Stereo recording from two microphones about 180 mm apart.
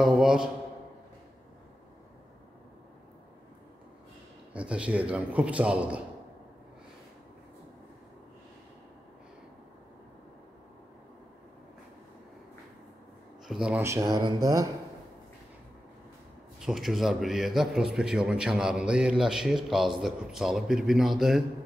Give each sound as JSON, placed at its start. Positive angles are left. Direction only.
{"t": 0.0, "sound": "a man's voice", "side_deg": -5}
{"t": 4.6, "sound": "a man's voice", "side_deg": -5}
{"t": 13.5, "sound": "a man's voice", "side_deg": -5}
{"t": 16.5, "sound": "a man's voice", "side_deg": 0}